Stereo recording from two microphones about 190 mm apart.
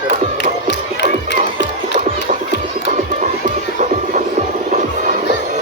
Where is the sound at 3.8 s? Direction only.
40° right (ahead or behind).